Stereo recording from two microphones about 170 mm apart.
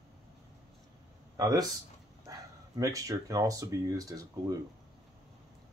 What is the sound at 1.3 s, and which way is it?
Speech, 20° right (ahead or behind).